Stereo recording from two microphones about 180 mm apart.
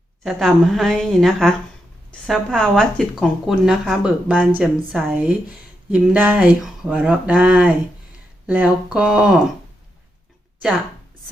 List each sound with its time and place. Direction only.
0.2 s speech: centre (ahead or behind)